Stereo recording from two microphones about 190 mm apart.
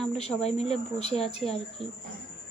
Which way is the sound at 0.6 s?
35° left (ahead or behind).